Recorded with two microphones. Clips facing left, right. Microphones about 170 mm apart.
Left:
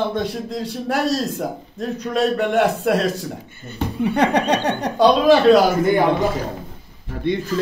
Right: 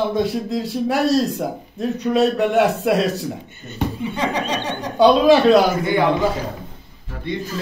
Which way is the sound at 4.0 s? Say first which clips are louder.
Left 8 dB; 65° left (ahead or behind).